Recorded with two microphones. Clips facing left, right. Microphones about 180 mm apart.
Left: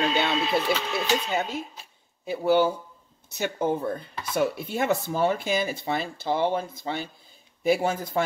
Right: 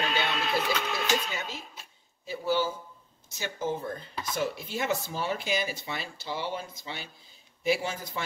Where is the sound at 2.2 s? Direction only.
60° left (ahead or behind).